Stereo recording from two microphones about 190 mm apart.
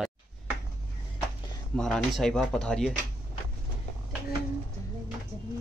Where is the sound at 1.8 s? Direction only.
Centre (ahead or behind).